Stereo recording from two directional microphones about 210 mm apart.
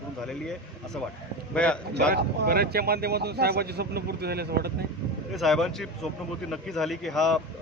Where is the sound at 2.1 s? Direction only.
50° right (ahead or behind).